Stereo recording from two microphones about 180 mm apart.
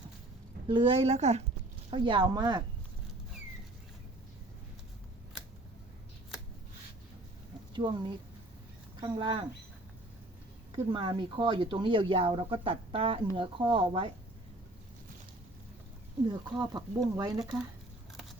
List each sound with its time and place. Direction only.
0.7 s a woman's voice: 30° right (ahead or behind)
7.7 s speech: 25° right (ahead or behind)
10.9 s speech: 25° right (ahead or behind)
16.2 s speech: 25° right (ahead or behind)